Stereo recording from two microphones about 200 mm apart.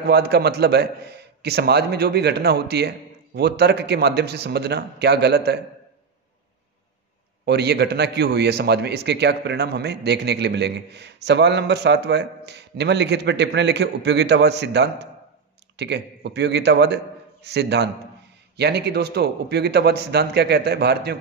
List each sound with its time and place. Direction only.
0.0 s a man's voice: 55° right (ahead or behind)
7.4 s a man's voice: 55° right (ahead or behind)